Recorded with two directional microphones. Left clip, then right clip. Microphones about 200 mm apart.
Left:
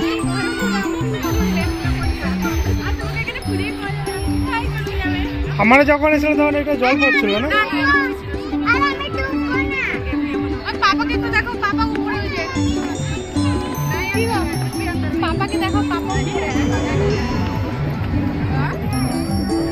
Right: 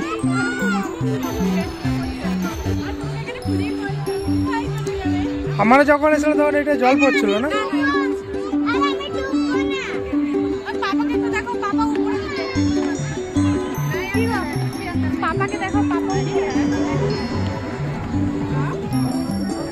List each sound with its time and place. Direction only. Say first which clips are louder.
0.0 s music: left 2 dB; centre (ahead or behind)
5.6 s speech: left 1 dB; 10° right (ahead or behind)
7.0 s a child's voice: left 1 dB; centre (ahead or behind)
7.8 s music: left 3 dB; centre (ahead or behind)
12.5 s music: right 4 dB; centre (ahead or behind)
15.2 s music: left 1 dB; 30° right (ahead or behind)
16.1 s music: even; centre (ahead or behind)